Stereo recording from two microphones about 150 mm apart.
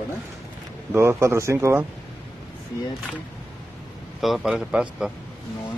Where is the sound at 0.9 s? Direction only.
20° right (ahead or behind).